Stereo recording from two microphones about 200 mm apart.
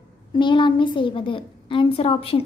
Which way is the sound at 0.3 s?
25° left (ahead or behind).